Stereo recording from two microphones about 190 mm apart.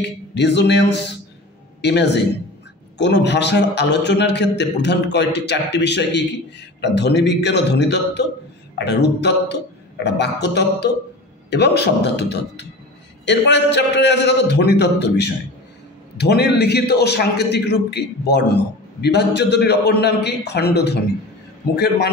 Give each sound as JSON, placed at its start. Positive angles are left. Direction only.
{"t": 0.0, "sound": "a man's voice", "side_deg": 65}